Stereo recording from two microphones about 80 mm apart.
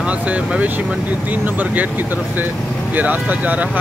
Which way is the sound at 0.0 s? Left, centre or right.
Centre.